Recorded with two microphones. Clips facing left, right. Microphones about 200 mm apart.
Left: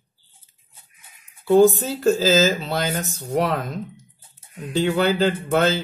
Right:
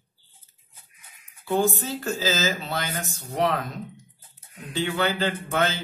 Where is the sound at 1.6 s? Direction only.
45° left (ahead or behind).